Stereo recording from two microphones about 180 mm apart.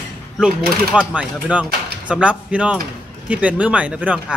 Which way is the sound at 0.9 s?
5° right (ahead or behind).